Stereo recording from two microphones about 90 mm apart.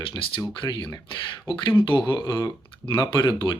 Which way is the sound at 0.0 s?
70° left (ahead or behind).